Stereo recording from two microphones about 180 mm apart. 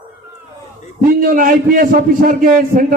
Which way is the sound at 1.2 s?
50° right (ahead or behind).